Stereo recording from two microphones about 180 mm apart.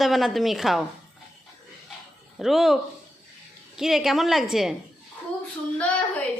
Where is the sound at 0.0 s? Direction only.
Centre (ahead or behind).